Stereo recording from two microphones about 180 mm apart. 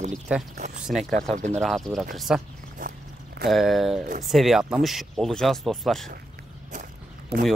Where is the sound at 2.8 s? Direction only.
50° right (ahead or behind).